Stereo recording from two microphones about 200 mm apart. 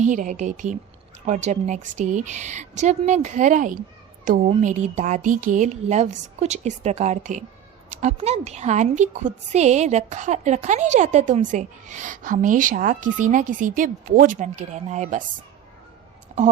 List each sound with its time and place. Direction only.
0.0 s a woman's voice: 40° right (ahead or behind)